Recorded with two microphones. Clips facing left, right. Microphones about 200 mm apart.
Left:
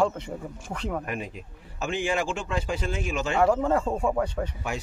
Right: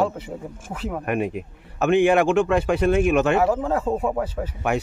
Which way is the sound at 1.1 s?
60° right (ahead or behind).